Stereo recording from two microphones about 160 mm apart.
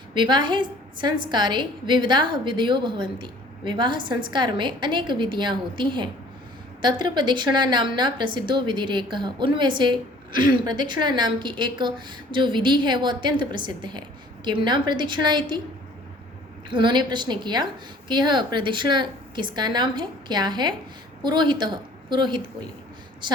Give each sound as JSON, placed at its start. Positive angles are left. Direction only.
{"t": 0.1, "sound": "a woman's voice", "side_deg": -30}
{"t": 16.6, "sound": "a woman's voice", "side_deg": -30}